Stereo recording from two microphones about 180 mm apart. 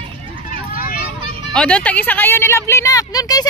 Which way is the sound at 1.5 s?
5° left (ahead or behind).